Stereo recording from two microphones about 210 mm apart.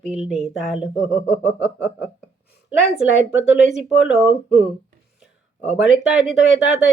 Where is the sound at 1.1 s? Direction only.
35° left (ahead or behind).